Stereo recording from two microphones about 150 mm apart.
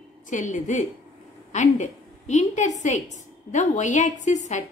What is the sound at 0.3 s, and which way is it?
A woman's voice, 55° left (ahead or behind).